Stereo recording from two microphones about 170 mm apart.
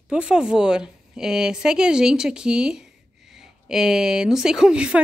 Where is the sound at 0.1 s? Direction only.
5° right (ahead or behind).